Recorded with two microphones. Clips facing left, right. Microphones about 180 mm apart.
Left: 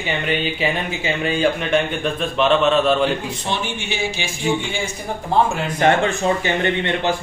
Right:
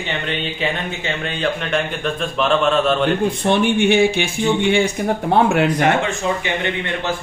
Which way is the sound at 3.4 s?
55° right (ahead or behind).